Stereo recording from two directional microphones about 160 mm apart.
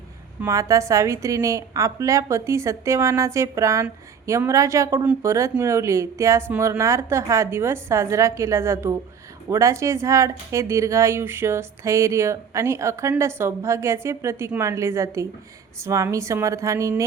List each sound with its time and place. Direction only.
0.4 s a woman's voice: 20° right (ahead or behind)